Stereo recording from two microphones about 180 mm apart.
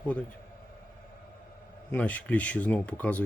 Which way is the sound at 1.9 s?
10° left (ahead or behind).